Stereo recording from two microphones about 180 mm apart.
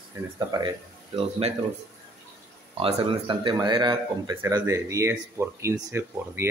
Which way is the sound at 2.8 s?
30° right (ahead or behind).